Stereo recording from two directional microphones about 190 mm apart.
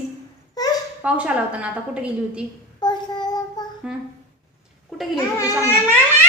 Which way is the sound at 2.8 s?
20° left (ahead or behind).